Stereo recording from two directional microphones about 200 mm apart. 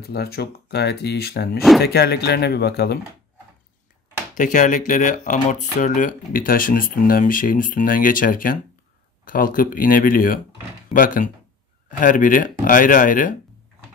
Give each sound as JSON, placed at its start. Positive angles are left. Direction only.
{"t": 0.0, "sound": "speech", "side_deg": 50}
{"t": 4.4, "sound": "speech", "side_deg": 40}